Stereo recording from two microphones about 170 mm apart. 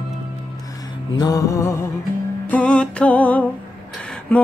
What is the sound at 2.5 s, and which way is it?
Music, 5° left (ahead or behind).